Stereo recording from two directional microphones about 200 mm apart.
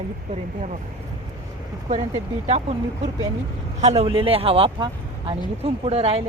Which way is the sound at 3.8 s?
35° right (ahead or behind).